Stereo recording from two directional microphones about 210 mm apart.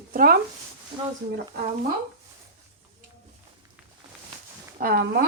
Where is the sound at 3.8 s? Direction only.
5° right (ahead or behind).